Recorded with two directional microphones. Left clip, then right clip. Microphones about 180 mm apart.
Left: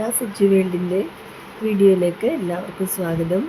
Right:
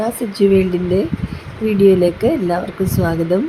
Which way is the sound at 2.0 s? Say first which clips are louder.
Right 5 dB; 15° right (ahead or behind).